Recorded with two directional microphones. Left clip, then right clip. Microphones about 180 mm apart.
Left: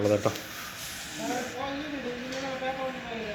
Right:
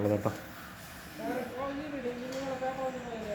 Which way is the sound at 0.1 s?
5° right (ahead or behind).